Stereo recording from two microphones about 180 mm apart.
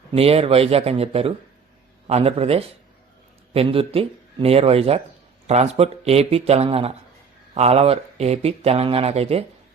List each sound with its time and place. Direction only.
0.1 s speech: 35° right (ahead or behind)